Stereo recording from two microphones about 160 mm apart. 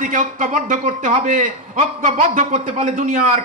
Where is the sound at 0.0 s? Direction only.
55° right (ahead or behind).